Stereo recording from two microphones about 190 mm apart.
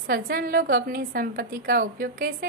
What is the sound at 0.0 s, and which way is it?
A woman's voice, 50° right (ahead or behind).